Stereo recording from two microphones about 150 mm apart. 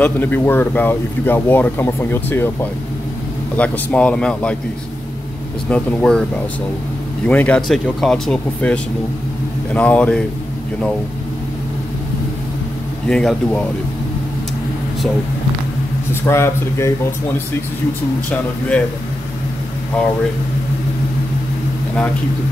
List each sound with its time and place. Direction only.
0.0 s speech: 10° left (ahead or behind)
5.7 s speech: 10° left (ahead or behind)
7.2 s speech: 10° left (ahead or behind)
13.1 s speech: 5° left (ahead or behind)
16.1 s speech: 15° left (ahead or behind)